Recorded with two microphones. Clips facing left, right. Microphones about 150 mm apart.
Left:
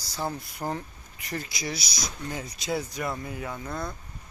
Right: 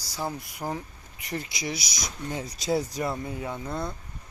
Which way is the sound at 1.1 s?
20° right (ahead or behind).